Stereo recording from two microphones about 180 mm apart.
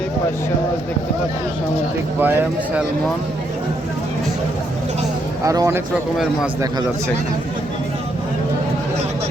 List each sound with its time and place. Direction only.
2.2 s speech: 10° right (ahead or behind)
5.5 s speech: 15° right (ahead or behind)